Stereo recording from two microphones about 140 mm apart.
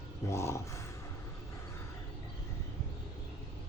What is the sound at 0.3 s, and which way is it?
Speech, 20° left (ahead or behind).